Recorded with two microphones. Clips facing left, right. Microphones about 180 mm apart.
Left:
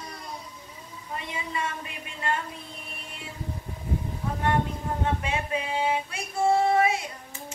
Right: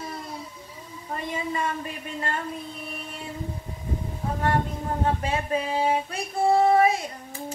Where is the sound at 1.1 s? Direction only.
40° right (ahead or behind).